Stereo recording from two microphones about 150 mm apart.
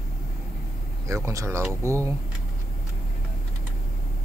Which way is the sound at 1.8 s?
20° right (ahead or behind).